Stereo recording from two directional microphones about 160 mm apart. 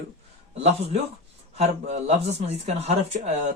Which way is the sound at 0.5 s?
40° right (ahead or behind).